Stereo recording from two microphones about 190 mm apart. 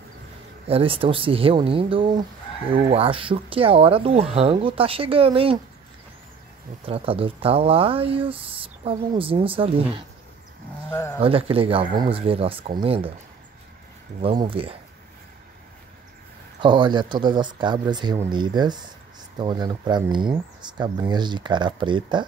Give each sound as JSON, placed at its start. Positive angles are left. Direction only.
{"t": 0.7, "sound": "speech", "side_deg": -30}
{"t": 6.9, "sound": "speech", "side_deg": -30}
{"t": 10.9, "sound": "speech", "side_deg": 15}
{"t": 11.1, "sound": "speech", "side_deg": -30}
{"t": 14.2, "sound": "speech", "side_deg": -25}
{"t": 16.6, "sound": "speech", "side_deg": -25}